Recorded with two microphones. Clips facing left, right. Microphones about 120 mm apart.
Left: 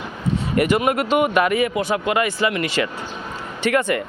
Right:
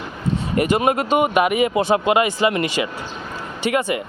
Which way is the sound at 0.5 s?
25° right (ahead or behind).